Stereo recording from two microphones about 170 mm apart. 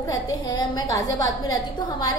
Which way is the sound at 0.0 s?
20° left (ahead or behind).